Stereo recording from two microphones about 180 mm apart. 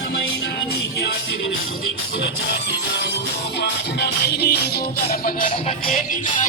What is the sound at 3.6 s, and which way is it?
Music, 65° left (ahead or behind).